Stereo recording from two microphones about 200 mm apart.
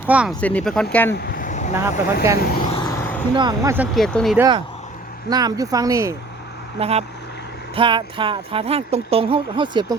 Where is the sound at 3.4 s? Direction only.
20° right (ahead or behind).